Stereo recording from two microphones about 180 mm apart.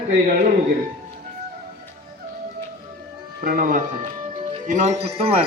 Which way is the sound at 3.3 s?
50° right (ahead or behind).